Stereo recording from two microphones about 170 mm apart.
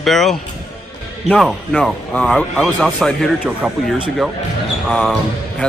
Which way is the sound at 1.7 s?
5° left (ahead or behind).